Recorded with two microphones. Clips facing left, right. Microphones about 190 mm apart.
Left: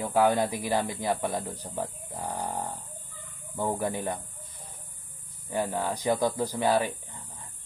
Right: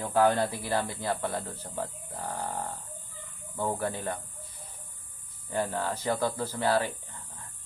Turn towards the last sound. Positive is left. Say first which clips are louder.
# left 2 dB
turn(degrees=15)  # may be behind; listen again after turning